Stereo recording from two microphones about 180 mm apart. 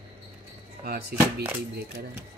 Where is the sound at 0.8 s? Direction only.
60° right (ahead or behind).